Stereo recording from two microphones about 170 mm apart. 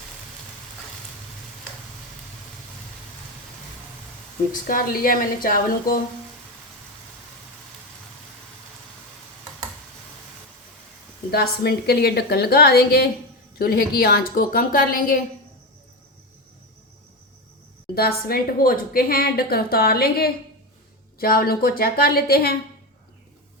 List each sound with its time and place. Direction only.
4.6 s a woman's voice: 55° left (ahead or behind)
11.3 s a woman's voice: 65° left (ahead or behind)
17.9 s a woman's voice: 65° left (ahead or behind)